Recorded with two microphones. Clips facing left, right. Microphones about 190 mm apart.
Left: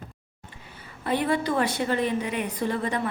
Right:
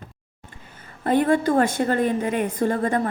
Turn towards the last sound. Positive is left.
turn(degrees=-45)  # may be behind; listen again after turning